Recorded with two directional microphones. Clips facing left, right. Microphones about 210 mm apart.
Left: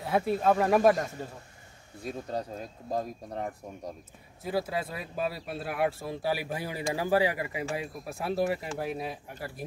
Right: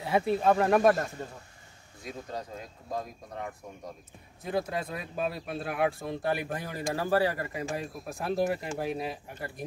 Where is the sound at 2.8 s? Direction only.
35° left (ahead or behind).